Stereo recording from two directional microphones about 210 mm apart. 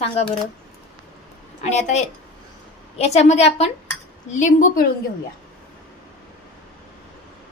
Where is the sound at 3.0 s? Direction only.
30° left (ahead or behind).